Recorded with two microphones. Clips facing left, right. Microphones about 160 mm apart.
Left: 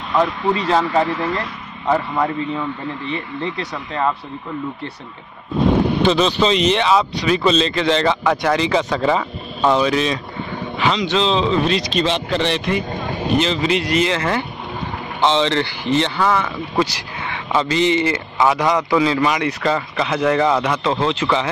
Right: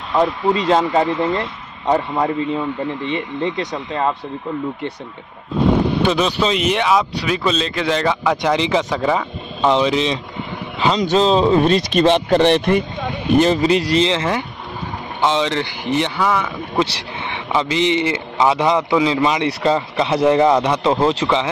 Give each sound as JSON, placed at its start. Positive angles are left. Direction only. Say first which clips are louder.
{"t": 0.1, "sound": "speech", "louder": "right 2 dB", "side_deg": -15}
{"t": 6.0, "sound": "speech", "louder": "left 1 dB", "side_deg": -10}
{"t": 9.7, "sound": "speech", "louder": "even", "side_deg": -20}
{"t": 11.0, "sound": "speech", "louder": "right 6 dB", "side_deg": -45}
{"t": 12.9, "sound": "a sound", "louder": "left 1 dB", "side_deg": 40}
{"t": 13.4, "sound": "speech", "louder": "right 7 dB", "side_deg": -45}